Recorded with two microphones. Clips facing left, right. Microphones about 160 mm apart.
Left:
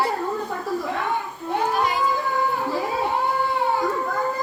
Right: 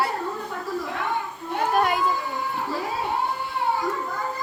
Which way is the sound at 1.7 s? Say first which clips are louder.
Right 2 dB; 55° right (ahead or behind).